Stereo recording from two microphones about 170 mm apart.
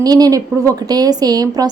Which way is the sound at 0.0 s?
20° right (ahead or behind).